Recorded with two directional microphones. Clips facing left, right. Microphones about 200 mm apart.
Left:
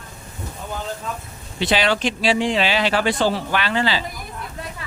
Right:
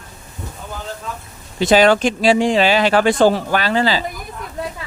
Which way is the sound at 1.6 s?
45° right (ahead or behind).